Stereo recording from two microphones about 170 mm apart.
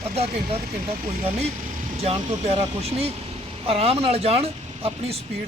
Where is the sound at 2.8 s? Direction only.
35° right (ahead or behind).